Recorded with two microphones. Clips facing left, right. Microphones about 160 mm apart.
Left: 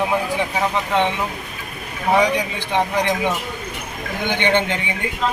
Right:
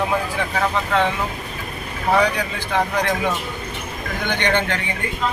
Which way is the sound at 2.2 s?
15° left (ahead or behind).